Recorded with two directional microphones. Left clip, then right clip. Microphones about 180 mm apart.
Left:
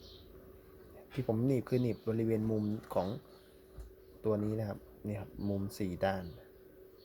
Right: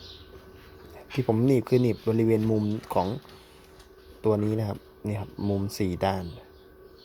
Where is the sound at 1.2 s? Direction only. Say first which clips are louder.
Right 10 dB; 35° right (ahead or behind).